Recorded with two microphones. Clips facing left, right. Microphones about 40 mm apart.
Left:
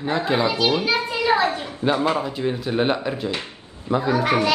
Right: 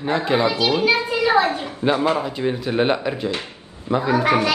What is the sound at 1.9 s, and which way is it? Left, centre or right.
Speech, right.